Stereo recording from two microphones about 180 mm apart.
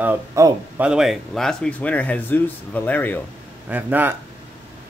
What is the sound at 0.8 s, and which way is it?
Speech, centre (ahead or behind).